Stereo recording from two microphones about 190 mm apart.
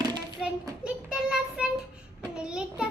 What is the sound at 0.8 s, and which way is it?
Child singing, 5° right (ahead or behind).